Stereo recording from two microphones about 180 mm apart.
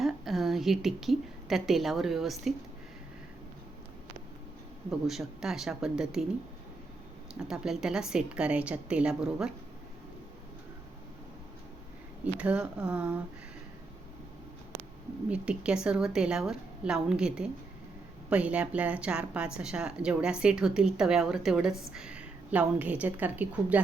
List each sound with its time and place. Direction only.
0.0 s a woman's voice: centre (ahead or behind)
4.9 s speech: centre (ahead or behind)
7.3 s speech: 5° right (ahead or behind)
12.2 s speech: 5° right (ahead or behind)
15.3 s speech: 5° right (ahead or behind)